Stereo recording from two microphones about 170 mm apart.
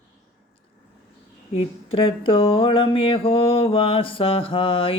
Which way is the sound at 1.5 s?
30° left (ahead or behind).